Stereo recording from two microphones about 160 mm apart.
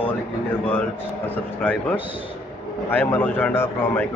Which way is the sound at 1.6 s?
10° left (ahead or behind).